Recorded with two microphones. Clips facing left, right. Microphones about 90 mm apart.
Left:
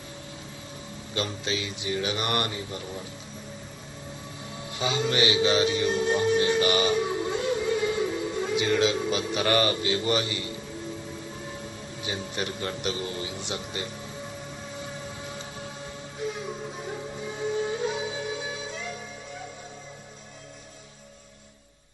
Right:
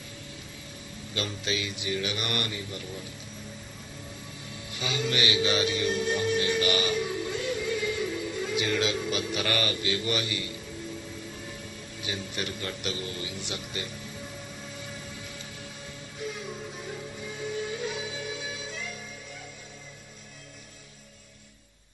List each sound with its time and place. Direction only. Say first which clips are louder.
1.1 s a man's voice: left 2 dB; 25° left (ahead or behind)
4.6 s music: left 4 dB; 20° left (ahead or behind)
8.6 s speech: left 5 dB; 5° left (ahead or behind)
8.9 s a man's voice: left 3 dB; 20° left (ahead or behind)
12.0 s a man's voice: left 3 dB; 25° left (ahead or behind)
14.8 s music: left 4 dB; 20° left (ahead or behind)
16.8 s music: left 4 dB; 25° left (ahead or behind)